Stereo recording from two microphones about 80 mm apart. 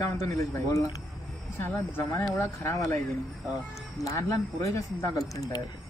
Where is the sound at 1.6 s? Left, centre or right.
Left.